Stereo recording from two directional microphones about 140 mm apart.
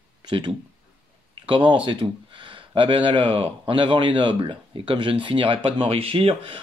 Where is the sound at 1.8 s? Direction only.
35° right (ahead or behind).